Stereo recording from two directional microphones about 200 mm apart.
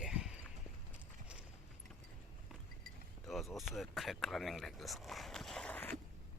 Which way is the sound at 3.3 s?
Centre (ahead or behind).